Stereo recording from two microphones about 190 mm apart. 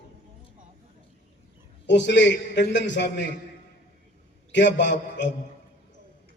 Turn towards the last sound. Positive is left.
turn(degrees=70)  # may be behind; listen again after turning